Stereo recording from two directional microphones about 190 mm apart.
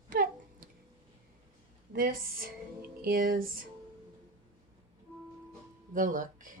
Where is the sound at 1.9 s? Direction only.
50° right (ahead or behind).